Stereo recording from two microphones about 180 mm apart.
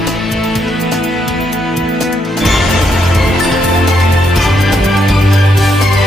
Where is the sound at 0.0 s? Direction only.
Centre (ahead or behind).